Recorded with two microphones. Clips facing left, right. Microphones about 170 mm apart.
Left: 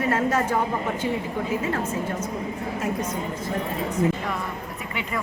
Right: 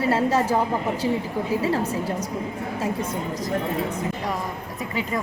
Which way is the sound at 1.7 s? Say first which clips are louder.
Right 2 dB; 35° right (ahead or behind).